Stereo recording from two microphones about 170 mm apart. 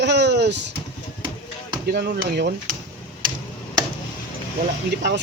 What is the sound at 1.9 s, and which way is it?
Speech, 70° right (ahead or behind).